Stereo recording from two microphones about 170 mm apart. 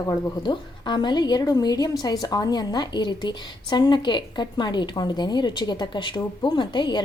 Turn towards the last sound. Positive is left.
turn(degrees=25)  # may be behind; listen again after turning